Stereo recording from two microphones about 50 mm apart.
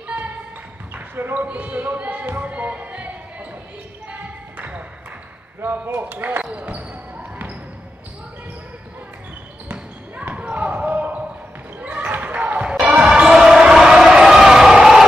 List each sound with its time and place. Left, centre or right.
0.0 s music: right
0.9 s basketball bounce: right
1.3 s speech: right
2.5 s music: right
4.1 s a sound: right
5.9 s speech: right
6.5 s basketball bounce: right
9.7 s basketball bounce: right
12.9 s basketball bounce: centre